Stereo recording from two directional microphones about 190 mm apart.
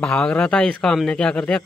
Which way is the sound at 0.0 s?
5° left (ahead or behind).